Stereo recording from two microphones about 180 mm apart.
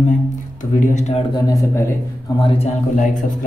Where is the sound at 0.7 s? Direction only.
40° left (ahead or behind).